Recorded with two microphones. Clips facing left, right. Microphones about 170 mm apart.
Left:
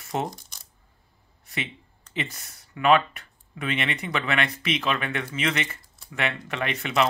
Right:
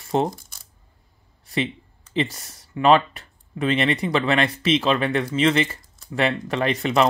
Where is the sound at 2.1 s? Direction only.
35° right (ahead or behind).